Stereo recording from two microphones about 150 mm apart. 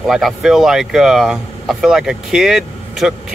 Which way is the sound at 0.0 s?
Centre (ahead or behind).